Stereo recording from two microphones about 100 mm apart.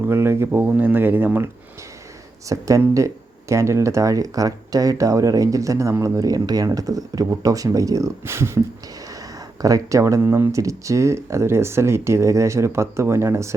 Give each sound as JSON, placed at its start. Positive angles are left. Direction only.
{"t": 0.0, "sound": "speech", "side_deg": -25}
{"t": 2.5, "sound": "speech", "side_deg": -35}